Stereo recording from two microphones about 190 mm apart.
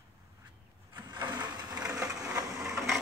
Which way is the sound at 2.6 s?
10° right (ahead or behind).